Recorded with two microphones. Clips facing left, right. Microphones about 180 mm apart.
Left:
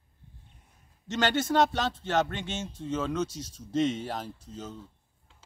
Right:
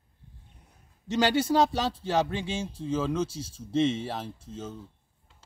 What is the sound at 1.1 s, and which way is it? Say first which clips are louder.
Speech: right 3 dB; 10° right (ahead or behind).